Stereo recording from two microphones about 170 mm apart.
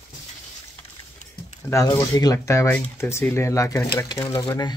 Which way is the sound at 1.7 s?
20° left (ahead or behind).